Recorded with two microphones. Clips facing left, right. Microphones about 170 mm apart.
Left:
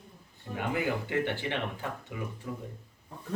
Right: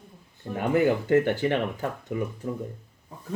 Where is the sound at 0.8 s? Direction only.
45° right (ahead or behind).